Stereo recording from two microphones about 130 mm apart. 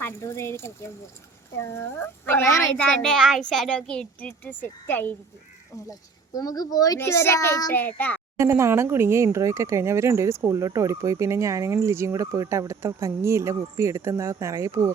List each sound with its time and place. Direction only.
0.0 s a child's voice: 20° left (ahead or behind)
2.7 s speech: 5° left (ahead or behind)
5.9 s a child's voice: 30° left (ahead or behind)
7.7 s speech: 15° left (ahead or behind)
8.4 s speech: 20° right (ahead or behind)